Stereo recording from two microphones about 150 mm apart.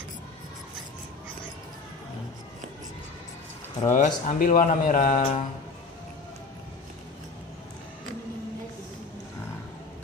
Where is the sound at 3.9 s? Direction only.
60° left (ahead or behind).